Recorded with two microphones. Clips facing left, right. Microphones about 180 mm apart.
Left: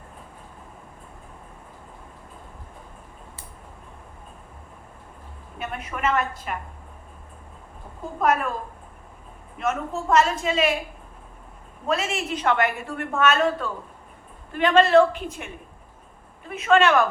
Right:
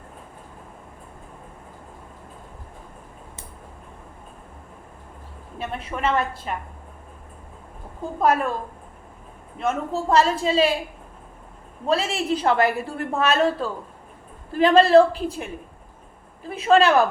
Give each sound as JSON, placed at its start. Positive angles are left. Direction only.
{"t": 5.5, "sound": "a woman's voice", "side_deg": -30}
{"t": 8.2, "sound": "a woman's voice", "side_deg": -30}
{"t": 9.6, "sound": "a woman's voice", "side_deg": -30}
{"t": 11.9, "sound": "a woman's voice", "side_deg": -30}